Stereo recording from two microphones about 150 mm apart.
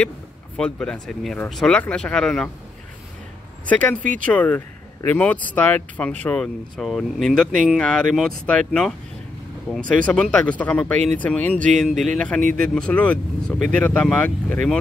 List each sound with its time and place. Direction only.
0.6 s speech: 5° left (ahead or behind)
3.6 s speech: 10° left (ahead or behind)
4.0 s speech: 60° right (ahead or behind)
4.3 s speech: 10° left (ahead or behind)